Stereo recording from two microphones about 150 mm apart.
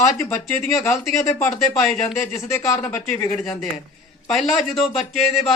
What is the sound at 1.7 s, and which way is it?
Speech, centre (ahead or behind).